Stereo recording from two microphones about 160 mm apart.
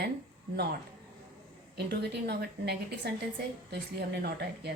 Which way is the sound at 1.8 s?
85° right.